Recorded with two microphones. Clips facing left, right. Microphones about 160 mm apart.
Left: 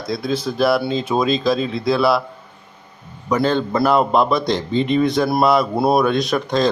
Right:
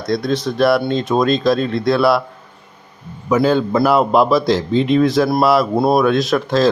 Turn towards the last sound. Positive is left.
turn(degrees=0)  # may be behind; listen again after turning